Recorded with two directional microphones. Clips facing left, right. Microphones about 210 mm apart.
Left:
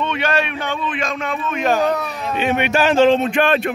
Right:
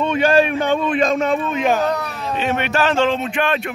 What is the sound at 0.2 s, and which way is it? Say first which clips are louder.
A man's voice: right 6 dB; 35° right (ahead or behind).